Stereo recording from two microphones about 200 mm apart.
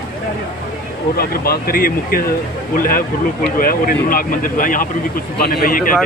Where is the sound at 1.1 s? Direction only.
50° left (ahead or behind).